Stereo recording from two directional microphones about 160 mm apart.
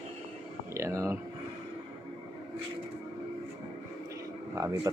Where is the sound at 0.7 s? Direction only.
20° right (ahead or behind).